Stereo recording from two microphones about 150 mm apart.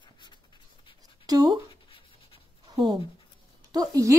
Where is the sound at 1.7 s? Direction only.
35° left (ahead or behind).